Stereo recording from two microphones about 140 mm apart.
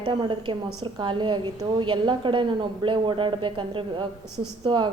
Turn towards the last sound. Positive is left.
turn(degrees=-35)  # may be behind; listen again after turning